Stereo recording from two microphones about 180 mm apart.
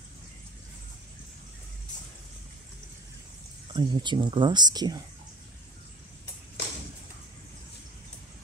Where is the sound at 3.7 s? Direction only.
25° right (ahead or behind).